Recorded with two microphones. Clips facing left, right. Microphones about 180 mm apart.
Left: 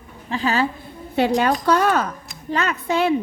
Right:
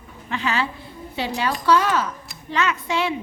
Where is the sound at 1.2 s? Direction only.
55° left (ahead or behind).